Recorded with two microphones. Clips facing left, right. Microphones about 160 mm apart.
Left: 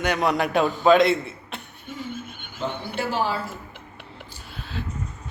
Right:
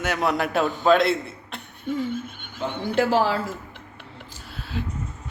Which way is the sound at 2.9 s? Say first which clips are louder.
Right 6 dB; 90° right.